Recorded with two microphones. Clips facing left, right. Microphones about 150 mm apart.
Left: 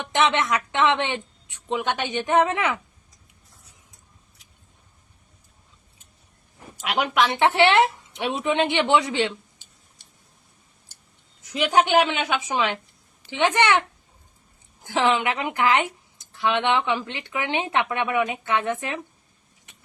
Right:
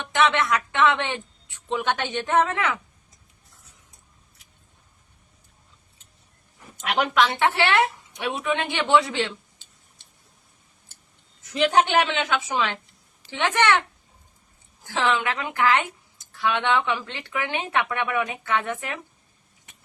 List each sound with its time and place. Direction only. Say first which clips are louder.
0.1 s a woman's voice: even; 20° left (ahead or behind)
6.8 s speech: even; 10° left (ahead or behind)
11.5 s a woman's voice: left 1 dB; 10° left (ahead or behind)
14.8 s a woman's voice: left 2 dB; 15° left (ahead or behind)